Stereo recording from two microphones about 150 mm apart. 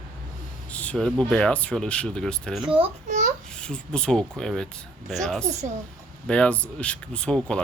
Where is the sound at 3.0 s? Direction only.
55° right (ahead or behind).